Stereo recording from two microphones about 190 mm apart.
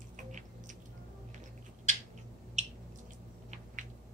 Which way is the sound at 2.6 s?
40° right (ahead or behind).